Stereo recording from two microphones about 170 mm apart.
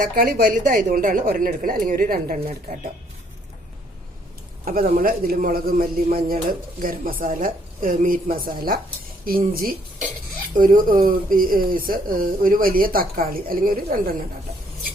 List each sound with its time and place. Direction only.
0.0 s speech: 55° right (ahead or behind)
4.6 s speech: 55° right (ahead or behind)